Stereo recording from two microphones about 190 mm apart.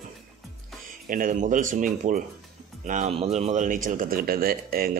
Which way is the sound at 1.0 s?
45° right (ahead or behind).